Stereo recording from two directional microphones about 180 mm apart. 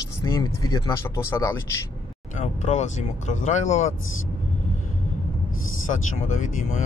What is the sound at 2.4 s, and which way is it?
Speech, 40° left (ahead or behind).